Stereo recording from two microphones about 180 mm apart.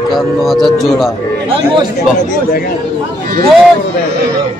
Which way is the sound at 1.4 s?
30° right (ahead or behind).